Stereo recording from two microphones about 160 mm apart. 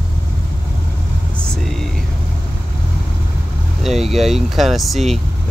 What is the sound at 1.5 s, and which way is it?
Vehicle, centre (ahead or behind).